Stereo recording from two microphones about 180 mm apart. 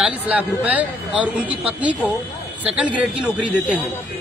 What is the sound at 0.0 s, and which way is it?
A man's voice, 5° right (ahead or behind).